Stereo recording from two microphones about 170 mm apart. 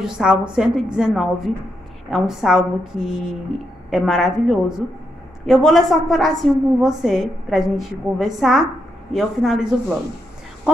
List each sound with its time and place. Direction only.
0.2 s a woman's voice: 5° right (ahead or behind)